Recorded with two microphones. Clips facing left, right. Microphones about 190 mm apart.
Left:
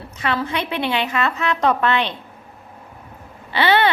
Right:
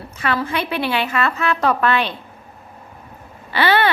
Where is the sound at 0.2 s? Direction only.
20° left (ahead or behind).